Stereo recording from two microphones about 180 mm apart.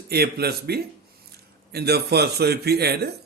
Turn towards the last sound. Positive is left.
turn(degrees=-65)  # may be behind; listen again after turning